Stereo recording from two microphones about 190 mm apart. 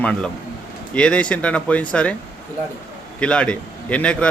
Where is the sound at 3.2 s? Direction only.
5° left (ahead or behind).